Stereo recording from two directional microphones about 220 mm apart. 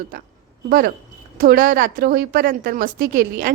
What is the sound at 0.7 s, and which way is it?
A woman's voice, 40° right (ahead or behind).